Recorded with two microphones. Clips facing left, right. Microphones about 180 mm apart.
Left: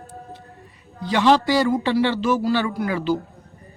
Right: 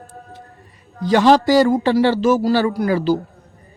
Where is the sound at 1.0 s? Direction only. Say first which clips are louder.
Right 4 dB; 40° right (ahead or behind).